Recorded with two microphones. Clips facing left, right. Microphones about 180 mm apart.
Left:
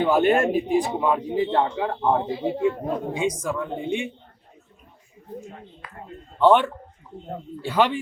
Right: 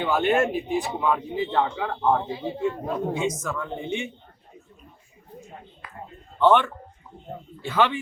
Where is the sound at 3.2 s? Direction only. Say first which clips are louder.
Left 3 dB; 10° left (ahead or behind).